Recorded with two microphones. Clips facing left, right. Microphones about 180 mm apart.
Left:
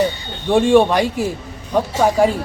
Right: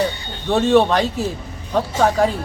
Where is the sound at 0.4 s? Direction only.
10° left (ahead or behind).